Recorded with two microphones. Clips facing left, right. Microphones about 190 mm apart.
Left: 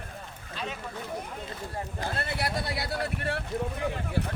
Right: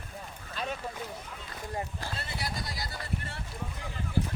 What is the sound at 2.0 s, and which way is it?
Vehicle, 60° left (ahead or behind).